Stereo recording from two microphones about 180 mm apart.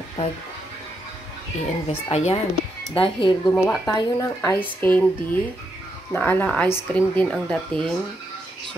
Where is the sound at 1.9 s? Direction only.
35° left (ahead or behind).